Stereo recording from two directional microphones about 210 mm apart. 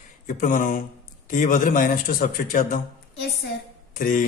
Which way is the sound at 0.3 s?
40° left (ahead or behind).